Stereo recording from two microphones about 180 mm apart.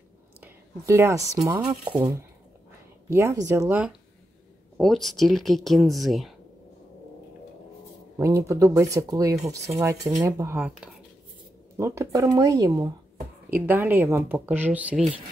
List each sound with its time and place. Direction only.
0.4 s a woman's voice: 15° right (ahead or behind)
4.7 s speech: centre (ahead or behind)
8.2 s speech: 15° right (ahead or behind)